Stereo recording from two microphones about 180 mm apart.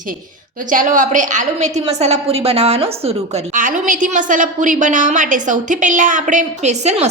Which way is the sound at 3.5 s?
50° right (ahead or behind).